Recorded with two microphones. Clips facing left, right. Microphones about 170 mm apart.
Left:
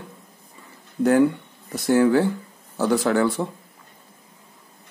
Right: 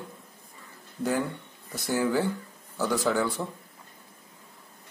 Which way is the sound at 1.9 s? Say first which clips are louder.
Left 8 dB; 65° left (ahead or behind).